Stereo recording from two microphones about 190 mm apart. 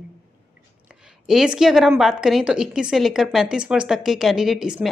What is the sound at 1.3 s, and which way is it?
A woman's voice, centre (ahead or behind).